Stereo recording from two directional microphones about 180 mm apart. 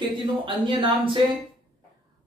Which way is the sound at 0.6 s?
25° right (ahead or behind).